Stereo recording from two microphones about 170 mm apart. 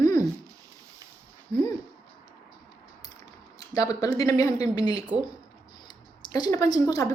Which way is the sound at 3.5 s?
20° left (ahead or behind).